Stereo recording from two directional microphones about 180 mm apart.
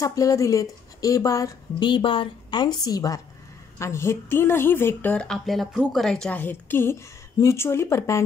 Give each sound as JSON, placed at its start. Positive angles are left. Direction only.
{"t": 0.0, "sound": "a woman's voice", "side_deg": 20}